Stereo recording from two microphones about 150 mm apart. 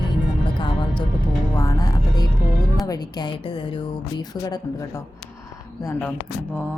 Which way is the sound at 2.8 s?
25° left (ahead or behind).